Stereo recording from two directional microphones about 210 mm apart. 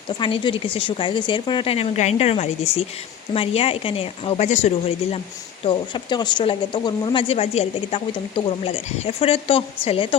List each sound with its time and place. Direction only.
0.2 s speech: 25° left (ahead or behind)
5.6 s speech: 20° left (ahead or behind)